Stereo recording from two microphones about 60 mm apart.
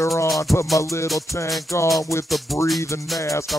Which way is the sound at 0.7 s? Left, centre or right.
Left.